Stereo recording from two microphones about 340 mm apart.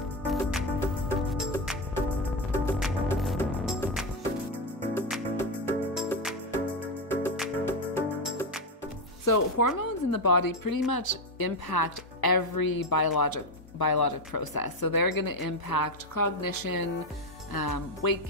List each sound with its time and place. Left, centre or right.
0.3 s music: centre
9.2 s speech: left
17.5 s speech: left